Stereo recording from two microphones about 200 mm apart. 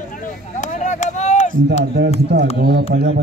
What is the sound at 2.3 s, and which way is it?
Speech, 55° right (ahead or behind).